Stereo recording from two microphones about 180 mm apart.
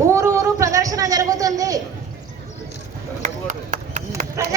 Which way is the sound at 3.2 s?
45° right (ahead or behind).